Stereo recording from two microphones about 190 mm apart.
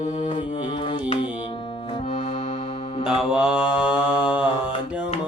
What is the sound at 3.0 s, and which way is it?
Mantra, 5° right (ahead or behind).